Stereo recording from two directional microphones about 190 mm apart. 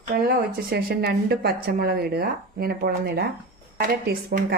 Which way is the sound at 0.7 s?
55° right (ahead or behind).